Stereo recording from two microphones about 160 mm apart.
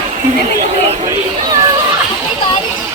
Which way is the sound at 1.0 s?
25° right (ahead or behind).